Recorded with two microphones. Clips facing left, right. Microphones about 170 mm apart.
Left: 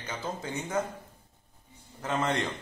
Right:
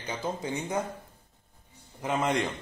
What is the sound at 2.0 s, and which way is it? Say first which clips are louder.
Speech: right 2 dB; 10° right (ahead or behind).